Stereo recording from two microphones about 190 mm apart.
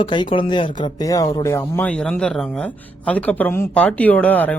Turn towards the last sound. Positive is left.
turn(degrees=10)  # may be behind; listen again after turning